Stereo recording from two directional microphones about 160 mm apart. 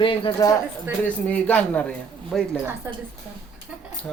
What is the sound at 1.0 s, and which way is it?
A woman's voice, 10° left (ahead or behind).